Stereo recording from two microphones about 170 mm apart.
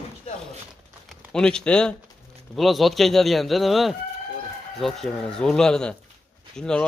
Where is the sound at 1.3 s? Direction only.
5° left (ahead or behind).